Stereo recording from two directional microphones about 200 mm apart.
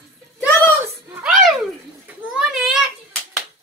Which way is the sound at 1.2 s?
5° right (ahead or behind).